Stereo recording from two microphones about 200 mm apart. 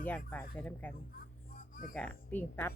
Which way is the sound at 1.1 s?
45° left (ahead or behind).